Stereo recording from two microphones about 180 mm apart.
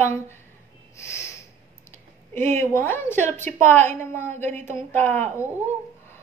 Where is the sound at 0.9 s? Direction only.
15° left (ahead or behind).